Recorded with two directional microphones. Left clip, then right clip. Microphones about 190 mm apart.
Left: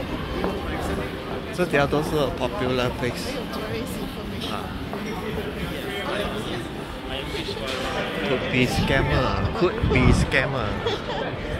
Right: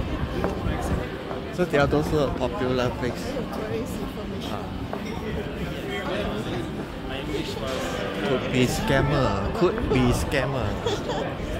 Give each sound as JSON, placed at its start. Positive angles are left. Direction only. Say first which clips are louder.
{"t": 1.6, "sound": "speech", "louder": "even", "side_deg": -25}
{"t": 8.5, "sound": "speech", "louder": "left 1 dB", "side_deg": -30}